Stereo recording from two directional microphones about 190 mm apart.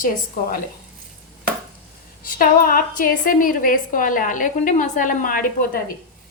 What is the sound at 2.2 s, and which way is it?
A woman's voice, 50° left (ahead or behind).